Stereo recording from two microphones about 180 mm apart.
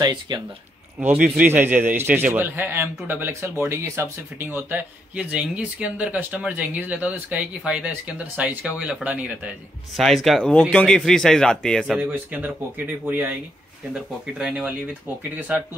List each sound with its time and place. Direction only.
0.0 s speech: 25° right (ahead or behind)
0.9 s a man's voice: 5° right (ahead or behind)
14.4 s a man's voice: 5° right (ahead or behind)